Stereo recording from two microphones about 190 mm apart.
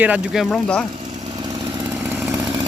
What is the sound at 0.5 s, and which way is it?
Speech, 5° left (ahead or behind).